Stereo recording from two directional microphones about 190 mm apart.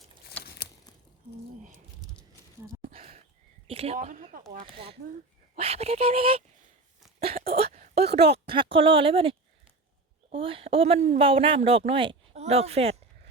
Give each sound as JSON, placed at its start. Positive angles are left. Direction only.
{"t": 2.9, "sound": "a sound", "side_deg": -30}
{"t": 3.9, "sound": "speech", "side_deg": -45}
{"t": 4.5, "sound": "speech", "side_deg": -30}
{"t": 7.4, "sound": "speech", "side_deg": -30}
{"t": 10.3, "sound": "speech", "side_deg": -30}